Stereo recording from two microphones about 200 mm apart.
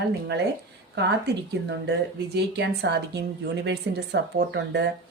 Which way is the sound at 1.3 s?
55° right (ahead or behind).